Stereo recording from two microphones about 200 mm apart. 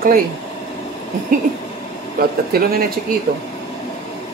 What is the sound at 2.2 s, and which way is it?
Speech, 50° right (ahead or behind).